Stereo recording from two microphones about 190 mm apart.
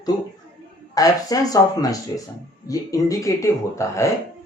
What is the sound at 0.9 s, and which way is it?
Speech, 20° left (ahead or behind).